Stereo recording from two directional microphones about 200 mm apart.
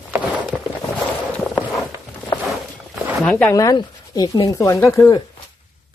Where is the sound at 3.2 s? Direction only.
5° left (ahead or behind).